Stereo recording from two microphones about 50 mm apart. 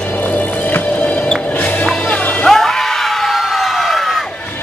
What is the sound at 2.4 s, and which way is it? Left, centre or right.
Music, centre.